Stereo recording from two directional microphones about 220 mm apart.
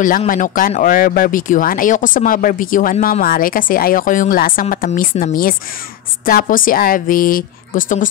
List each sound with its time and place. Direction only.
0.0 s speech: 35° left (ahead or behind)